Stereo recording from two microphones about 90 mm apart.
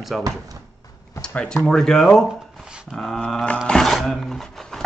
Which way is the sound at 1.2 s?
10° left (ahead or behind).